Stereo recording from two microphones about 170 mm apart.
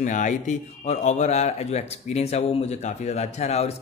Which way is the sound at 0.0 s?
45° left (ahead or behind).